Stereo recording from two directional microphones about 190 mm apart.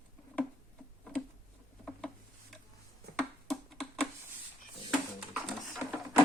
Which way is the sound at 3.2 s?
5° left (ahead or behind).